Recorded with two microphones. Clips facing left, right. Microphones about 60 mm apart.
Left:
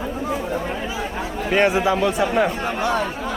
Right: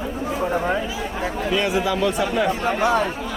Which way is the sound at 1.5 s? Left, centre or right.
Left.